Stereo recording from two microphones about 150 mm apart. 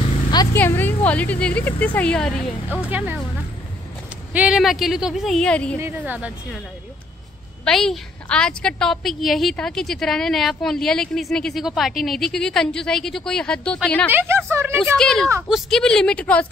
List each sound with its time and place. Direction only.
0.3 s a sound: 25° left (ahead or behind)
0.6 s speech: 15° left (ahead or behind)
2.8 s a woman's voice: 10° right (ahead or behind)
4.3 s a woman's voice: 10° right (ahead or behind)
5.8 s a woman's voice: 15° right (ahead or behind)
7.6 s a woman's voice: 5° left (ahead or behind)
14.1 s a woman's voice: 15° right (ahead or behind)
15.0 s a woman's voice: 5° left (ahead or behind)